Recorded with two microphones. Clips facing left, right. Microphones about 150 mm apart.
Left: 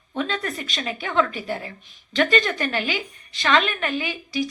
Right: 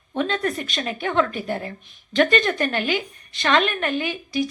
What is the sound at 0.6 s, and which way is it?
A woman's voice, 50° right (ahead or behind).